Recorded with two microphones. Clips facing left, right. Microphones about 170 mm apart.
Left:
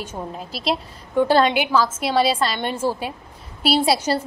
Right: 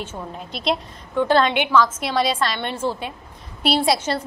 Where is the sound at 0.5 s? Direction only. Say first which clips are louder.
Right 2 dB; 5° left (ahead or behind).